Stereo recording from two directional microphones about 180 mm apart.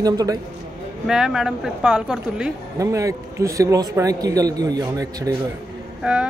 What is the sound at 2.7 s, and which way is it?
A man's voice, 15° right (ahead or behind).